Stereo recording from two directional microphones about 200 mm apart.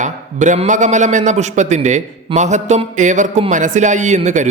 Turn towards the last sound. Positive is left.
turn(degrees=-35)  # may be behind; listen again after turning